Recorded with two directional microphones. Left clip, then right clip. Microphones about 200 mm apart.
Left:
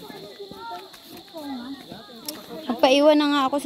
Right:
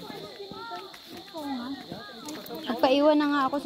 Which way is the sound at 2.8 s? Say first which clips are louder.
Left 5 dB; 25° left (ahead or behind).